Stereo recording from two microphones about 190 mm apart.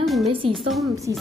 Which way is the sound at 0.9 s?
15° right (ahead or behind).